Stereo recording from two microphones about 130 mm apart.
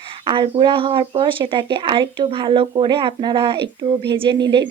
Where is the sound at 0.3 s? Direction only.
40° right (ahead or behind).